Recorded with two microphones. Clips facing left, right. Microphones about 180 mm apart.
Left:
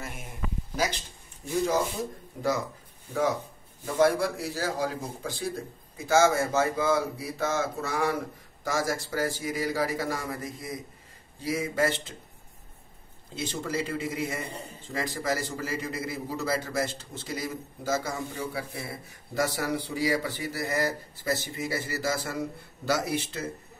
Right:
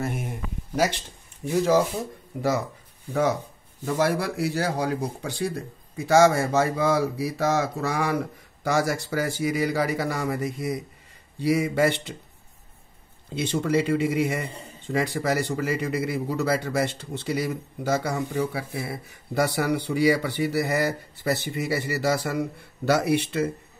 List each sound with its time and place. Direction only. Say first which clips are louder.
0.0 s speech: right 11 dB; 60° right (ahead or behind)
1.4 s speech: right 5 dB; 70° right (ahead or behind)
3.8 s speech: even; 70° right (ahead or behind)
13.3 s speech: right 8 dB; 65° right (ahead or behind)